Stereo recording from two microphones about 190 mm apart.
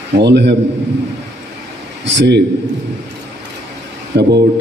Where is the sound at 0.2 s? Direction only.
65° right (ahead or behind).